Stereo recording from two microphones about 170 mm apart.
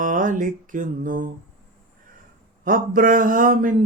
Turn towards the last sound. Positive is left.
turn(degrees=-55)  # may be behind; listen again after turning